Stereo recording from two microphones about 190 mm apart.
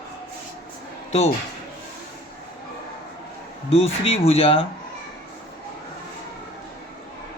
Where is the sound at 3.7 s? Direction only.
30° left (ahead or behind).